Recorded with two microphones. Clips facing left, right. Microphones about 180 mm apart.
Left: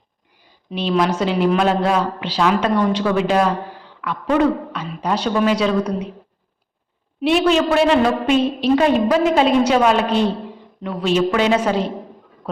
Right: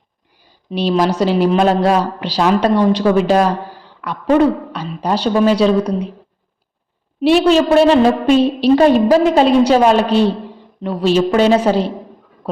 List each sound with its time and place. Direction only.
0.7 s a woman's voice: 35° right (ahead or behind)
7.4 s a woman's voice: 35° right (ahead or behind)